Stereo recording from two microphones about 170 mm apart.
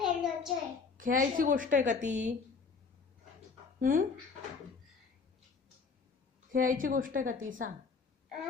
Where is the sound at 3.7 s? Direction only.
55° right (ahead or behind).